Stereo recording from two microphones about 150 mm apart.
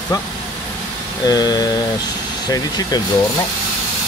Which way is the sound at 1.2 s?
25° left (ahead or behind).